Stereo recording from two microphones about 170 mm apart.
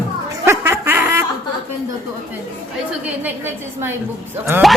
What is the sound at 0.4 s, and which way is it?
Snicker, 15° right (ahead or behind).